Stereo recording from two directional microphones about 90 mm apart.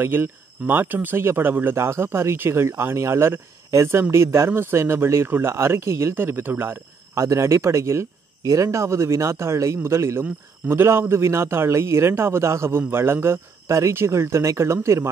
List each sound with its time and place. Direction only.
0.0 s a man's voice: 25° right (ahead or behind)